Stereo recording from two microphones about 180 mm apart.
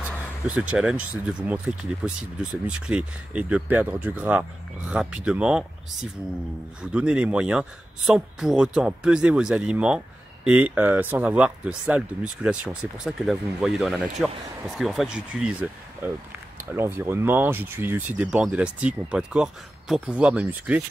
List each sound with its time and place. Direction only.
0.5 s speech: 5° right (ahead or behind)
6.8 s a man's voice: 5° right (ahead or behind)